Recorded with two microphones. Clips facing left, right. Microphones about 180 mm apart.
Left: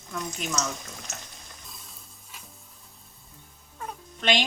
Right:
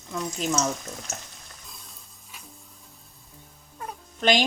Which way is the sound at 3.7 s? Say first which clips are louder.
Even; 5° right (ahead or behind).